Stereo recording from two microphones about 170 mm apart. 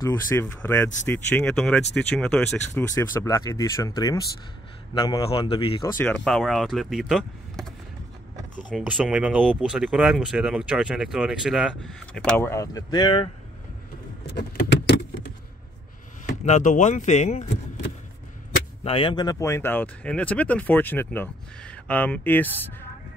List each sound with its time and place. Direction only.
0.0 s a man's voice: 15° left (ahead or behind)
5.3 s speech: 30° left (ahead or behind)
5.9 s speech: 5° left (ahead or behind)
8.8 s speech: 5° right (ahead or behind); by 13.3 s 30° left (ahead or behind)
14.3 s vehicle: 75° left (ahead or behind)
16.4 s speech: 45° left (ahead or behind)
18.9 s speech: 30° left (ahead or behind); by 22.8 s 10° left (ahead or behind)